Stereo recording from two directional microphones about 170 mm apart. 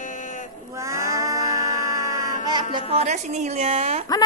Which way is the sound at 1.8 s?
50° left (ahead or behind).